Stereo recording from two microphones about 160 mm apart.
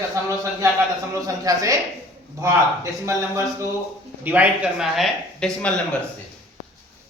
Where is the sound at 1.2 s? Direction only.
20° right (ahead or behind).